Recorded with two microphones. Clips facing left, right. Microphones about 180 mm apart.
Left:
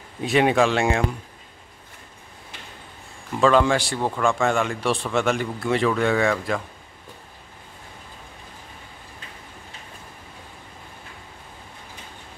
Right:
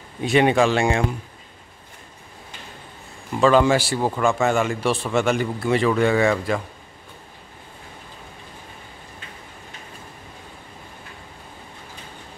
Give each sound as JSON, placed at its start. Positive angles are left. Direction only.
{"t": 0.2, "sound": "speech", "side_deg": 0}
{"t": 3.3, "sound": "speech", "side_deg": 0}